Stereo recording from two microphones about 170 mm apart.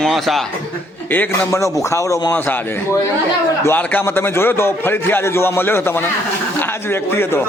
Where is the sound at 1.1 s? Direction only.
10° left (ahead or behind).